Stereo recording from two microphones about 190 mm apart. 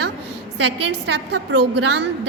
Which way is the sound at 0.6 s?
65° right (ahead or behind).